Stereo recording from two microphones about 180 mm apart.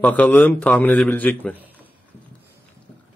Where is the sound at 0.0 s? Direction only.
10° left (ahead or behind).